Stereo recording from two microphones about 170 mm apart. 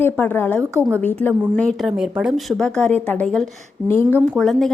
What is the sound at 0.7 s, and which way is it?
Speech, 15° right (ahead or behind).